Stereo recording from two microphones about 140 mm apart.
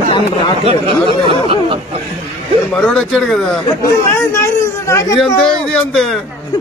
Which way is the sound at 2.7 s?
5° left (ahead or behind).